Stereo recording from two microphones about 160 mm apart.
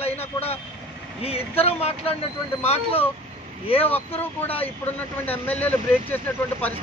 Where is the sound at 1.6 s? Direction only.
40° left (ahead or behind).